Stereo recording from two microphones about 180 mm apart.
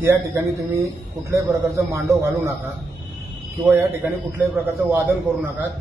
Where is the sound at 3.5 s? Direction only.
10° right (ahead or behind).